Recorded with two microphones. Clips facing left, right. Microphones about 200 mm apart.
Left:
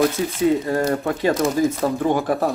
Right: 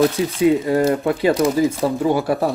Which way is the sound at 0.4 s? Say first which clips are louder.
Right 3 dB; 15° right (ahead or behind).